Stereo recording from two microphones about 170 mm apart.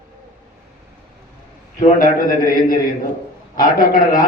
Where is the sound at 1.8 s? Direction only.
50° left (ahead or behind).